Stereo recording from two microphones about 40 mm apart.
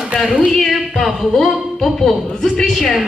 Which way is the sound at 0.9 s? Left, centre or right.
Centre.